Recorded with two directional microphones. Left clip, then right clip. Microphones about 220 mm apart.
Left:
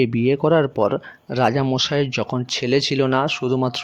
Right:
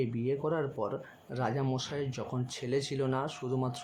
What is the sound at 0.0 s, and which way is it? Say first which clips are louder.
Speech: left 14 dB; 40° left (ahead or behind).